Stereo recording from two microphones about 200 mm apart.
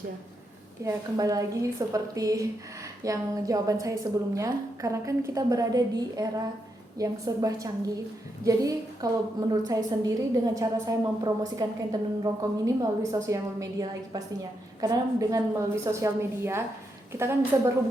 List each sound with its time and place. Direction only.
0.9 s a woman's voice: 15° right (ahead or behind)